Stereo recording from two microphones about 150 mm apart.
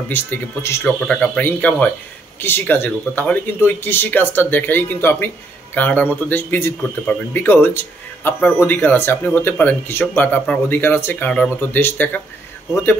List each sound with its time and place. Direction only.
0.1 s a man's voice: 15° left (ahead or behind)
0.8 s a man's voice: 5° left (ahead or behind)